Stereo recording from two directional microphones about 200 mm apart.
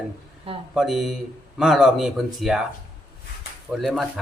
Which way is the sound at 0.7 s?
Centre (ahead or behind).